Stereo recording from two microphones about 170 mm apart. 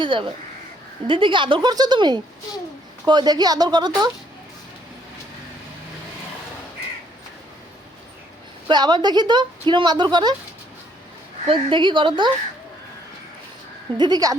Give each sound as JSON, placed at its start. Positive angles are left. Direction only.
{"t": 0.0, "sound": "a woman's voice", "side_deg": -30}
{"t": 8.6, "sound": "a woman's voice", "side_deg": -25}
{"t": 11.4, "sound": "a woman's voice", "side_deg": -30}
{"t": 14.0, "sound": "a woman's voice", "side_deg": -20}